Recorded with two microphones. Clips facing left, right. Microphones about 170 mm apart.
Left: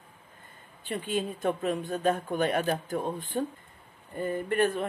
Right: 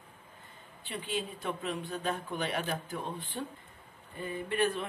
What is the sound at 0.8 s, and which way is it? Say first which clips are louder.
Speech: left 6 dB; 45° left (ahead or behind).